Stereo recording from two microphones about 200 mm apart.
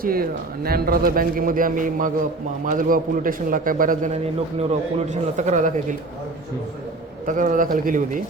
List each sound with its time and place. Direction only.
0.0 s a man's voice: 45° right (ahead or behind)
7.3 s a man's voice: 40° right (ahead or behind)